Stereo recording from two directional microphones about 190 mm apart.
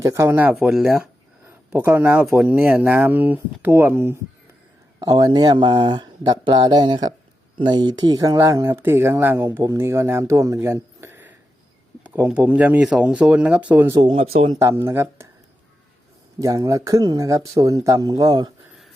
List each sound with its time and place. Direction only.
0.0 s speech: 15° right (ahead or behind)
14.0 s speech: 30° right (ahead or behind)
14.6 s speech: 15° right (ahead or behind)
16.4 s speech: 15° right (ahead or behind)